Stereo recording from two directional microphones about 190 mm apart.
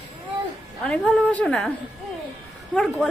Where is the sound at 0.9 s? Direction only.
5° left (ahead or behind).